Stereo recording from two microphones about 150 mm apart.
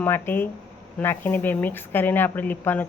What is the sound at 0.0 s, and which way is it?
Speech, 15° left (ahead or behind).